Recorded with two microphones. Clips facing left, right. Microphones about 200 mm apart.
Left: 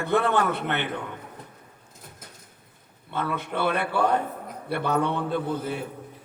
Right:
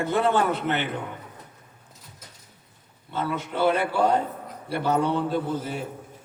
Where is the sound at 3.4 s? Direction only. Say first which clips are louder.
Right 5 dB; 60° left (ahead or behind).